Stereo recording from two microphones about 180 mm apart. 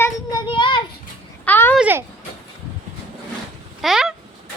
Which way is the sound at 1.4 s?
10° left (ahead or behind).